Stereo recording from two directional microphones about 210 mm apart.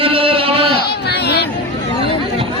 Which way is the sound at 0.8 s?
50° left (ahead or behind).